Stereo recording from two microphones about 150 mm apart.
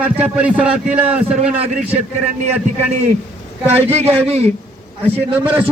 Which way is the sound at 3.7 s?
40° right (ahead or behind).